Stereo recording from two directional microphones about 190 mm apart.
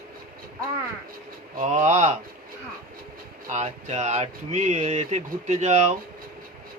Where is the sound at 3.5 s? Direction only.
35° right (ahead or behind).